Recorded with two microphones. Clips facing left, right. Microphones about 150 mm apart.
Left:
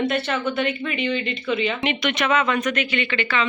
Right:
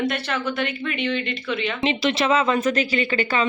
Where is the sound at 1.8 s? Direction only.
30° right (ahead or behind).